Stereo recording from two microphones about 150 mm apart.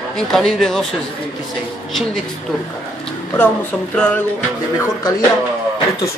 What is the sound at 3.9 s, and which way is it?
Speech, 5° left (ahead or behind).